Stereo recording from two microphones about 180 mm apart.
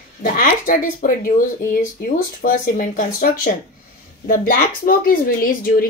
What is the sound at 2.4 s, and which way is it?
A woman's voice, 45° left (ahead or behind).